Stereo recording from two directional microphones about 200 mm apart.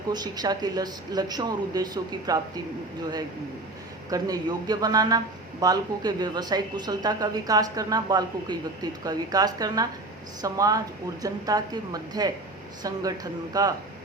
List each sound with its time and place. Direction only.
0.1 s speech: 20° right (ahead or behind)
4.1 s speech: 20° right (ahead or behind)